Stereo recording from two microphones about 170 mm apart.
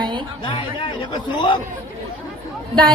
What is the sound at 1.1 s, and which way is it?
Speech, 25° left (ahead or behind).